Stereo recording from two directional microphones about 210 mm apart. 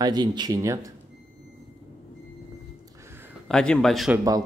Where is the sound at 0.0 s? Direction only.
20° right (ahead or behind).